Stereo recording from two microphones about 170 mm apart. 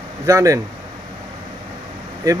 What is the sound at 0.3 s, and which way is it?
Speech, 20° right (ahead or behind).